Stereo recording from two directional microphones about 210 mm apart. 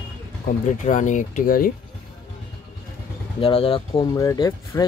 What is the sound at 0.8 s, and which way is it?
Speech, 35° left (ahead or behind).